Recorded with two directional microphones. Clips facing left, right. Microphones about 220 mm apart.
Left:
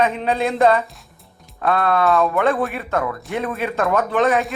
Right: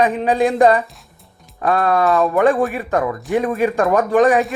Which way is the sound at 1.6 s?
15° right (ahead or behind).